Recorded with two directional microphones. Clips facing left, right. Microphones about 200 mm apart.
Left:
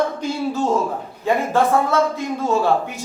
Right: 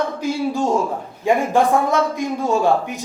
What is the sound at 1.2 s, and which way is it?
A man's voice, 15° right (ahead or behind).